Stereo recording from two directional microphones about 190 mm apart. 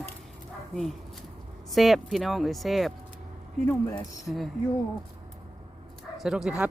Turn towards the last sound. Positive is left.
turn(degrees=-5)  # may be behind; listen again after turning